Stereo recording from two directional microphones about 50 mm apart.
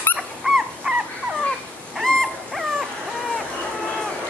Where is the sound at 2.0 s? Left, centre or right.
Centre.